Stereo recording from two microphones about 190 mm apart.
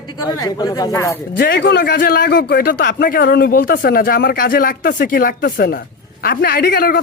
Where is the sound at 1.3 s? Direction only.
55° left (ahead or behind).